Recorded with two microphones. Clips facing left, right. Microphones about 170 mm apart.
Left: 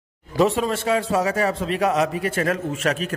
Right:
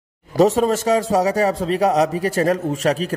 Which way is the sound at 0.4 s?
40° right (ahead or behind).